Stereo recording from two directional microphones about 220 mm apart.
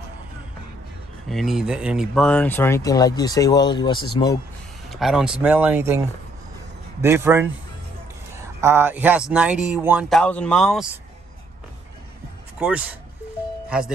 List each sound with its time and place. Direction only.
1.3 s speech: centre (ahead or behind); by 4.4 s 20° left (ahead or behind)
4.8 s speech: centre (ahead or behind)
7.0 s a man's voice: 10° right (ahead or behind)
12.5 s a man's voice: 5° right (ahead or behind)